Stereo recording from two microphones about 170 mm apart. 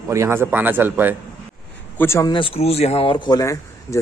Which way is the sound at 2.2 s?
30° left (ahead or behind).